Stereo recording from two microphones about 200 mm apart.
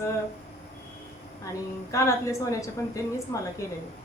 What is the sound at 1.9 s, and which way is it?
A man's voice, 15° left (ahead or behind).